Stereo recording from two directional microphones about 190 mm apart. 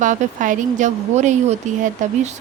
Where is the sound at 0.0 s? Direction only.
40° right (ahead or behind).